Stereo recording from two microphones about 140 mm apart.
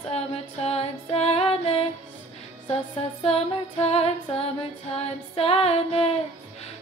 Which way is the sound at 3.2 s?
45° left (ahead or behind).